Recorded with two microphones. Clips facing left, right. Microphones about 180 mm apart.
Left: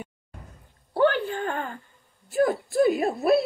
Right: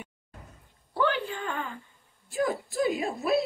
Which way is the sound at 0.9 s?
50° left (ahead or behind).